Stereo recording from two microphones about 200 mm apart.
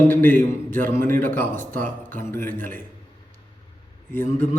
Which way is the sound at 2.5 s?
40° right (ahead or behind).